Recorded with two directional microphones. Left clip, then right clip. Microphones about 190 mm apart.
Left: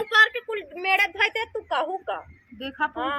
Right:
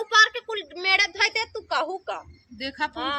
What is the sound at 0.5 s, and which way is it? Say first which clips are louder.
A woman's voice: right 1 dB; 25° left (ahead or behind).